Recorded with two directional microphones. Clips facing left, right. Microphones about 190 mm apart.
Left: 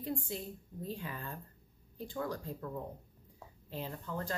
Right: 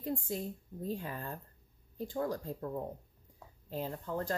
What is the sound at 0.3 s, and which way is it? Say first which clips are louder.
Speech: right 3 dB; 45° right (ahead or behind).